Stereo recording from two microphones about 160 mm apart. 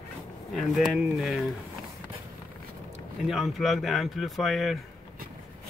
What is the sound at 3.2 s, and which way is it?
Speech, centre (ahead or behind).